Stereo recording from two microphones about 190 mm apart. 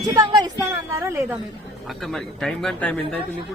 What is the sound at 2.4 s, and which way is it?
Speech, 5° left (ahead or behind).